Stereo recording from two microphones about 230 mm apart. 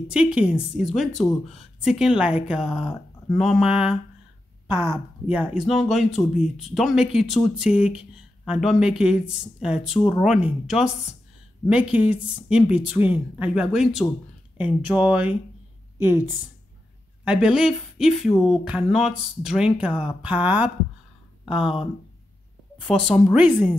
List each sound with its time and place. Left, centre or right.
0.1 s speech: centre
17.2 s a sound: centre
17.6 s speech: centre
21.5 s speech: left
22.8 s speech: centre